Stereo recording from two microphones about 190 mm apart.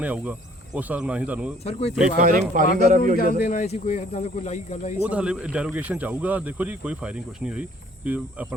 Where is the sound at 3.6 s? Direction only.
35° left (ahead or behind).